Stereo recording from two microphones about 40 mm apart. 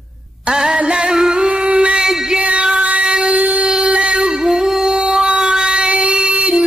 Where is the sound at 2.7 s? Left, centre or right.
Right.